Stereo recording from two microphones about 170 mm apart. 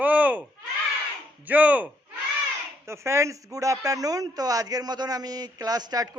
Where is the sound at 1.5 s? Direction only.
10° right (ahead or behind).